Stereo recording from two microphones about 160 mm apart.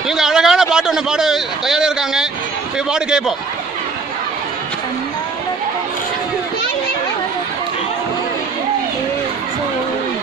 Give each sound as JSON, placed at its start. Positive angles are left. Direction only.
{"t": 0.1, "sound": "a man's voice", "side_deg": -5}